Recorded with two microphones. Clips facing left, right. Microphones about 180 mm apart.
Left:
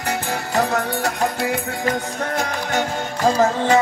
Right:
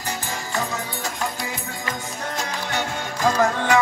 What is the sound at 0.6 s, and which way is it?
Music, 65° left (ahead or behind).